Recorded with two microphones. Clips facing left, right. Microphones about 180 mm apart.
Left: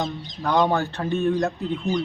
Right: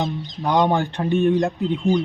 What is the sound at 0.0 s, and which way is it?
Speech, 20° right (ahead or behind).